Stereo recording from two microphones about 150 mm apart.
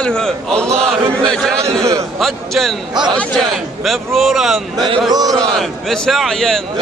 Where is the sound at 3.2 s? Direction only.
Centre (ahead or behind).